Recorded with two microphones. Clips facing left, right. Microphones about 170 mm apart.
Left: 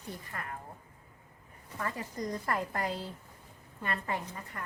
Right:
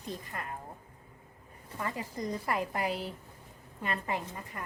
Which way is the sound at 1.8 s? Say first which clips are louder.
Even; 15° right (ahead or behind).